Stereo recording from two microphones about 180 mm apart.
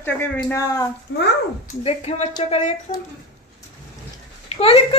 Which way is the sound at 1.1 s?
90° left.